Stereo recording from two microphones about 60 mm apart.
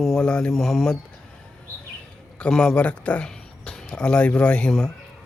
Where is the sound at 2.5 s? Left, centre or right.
Centre.